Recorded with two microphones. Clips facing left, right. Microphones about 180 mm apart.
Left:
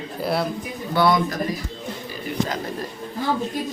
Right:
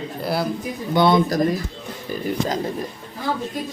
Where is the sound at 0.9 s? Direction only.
25° right (ahead or behind).